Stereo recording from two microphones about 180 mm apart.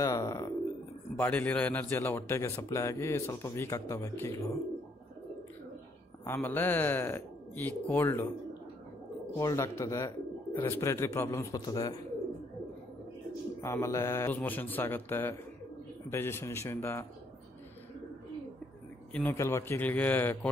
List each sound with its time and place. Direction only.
0.0 s speech: 20° left (ahead or behind)
1.1 s a man's voice: 10° left (ahead or behind)
6.2 s a man's voice: 10° left (ahead or behind)
9.4 s a man's voice: 20° left (ahead or behind)
13.6 s a man's voice: 15° left (ahead or behind)
19.1 s a man's voice: 10° left (ahead or behind)